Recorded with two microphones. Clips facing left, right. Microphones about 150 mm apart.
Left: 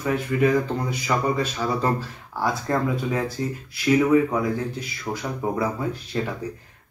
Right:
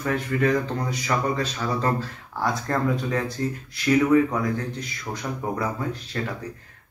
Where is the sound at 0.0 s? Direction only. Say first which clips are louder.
Left 2 dB; 10° left (ahead or behind).